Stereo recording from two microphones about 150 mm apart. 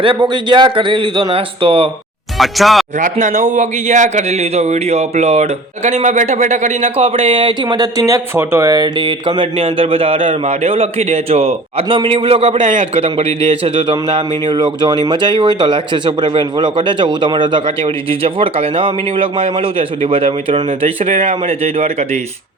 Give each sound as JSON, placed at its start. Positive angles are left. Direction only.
{"t": 0.0, "sound": "a man's voice", "side_deg": -35}
{"t": 2.4, "sound": "speech", "side_deg": 0}
{"t": 3.0, "sound": "a man's voice", "side_deg": -55}